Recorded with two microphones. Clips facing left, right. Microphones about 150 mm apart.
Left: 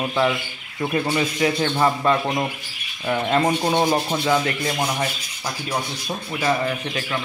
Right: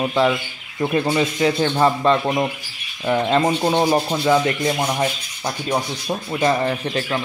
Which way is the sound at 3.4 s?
10° right (ahead or behind).